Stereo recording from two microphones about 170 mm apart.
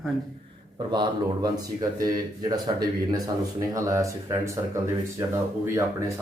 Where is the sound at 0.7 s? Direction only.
25° right (ahead or behind).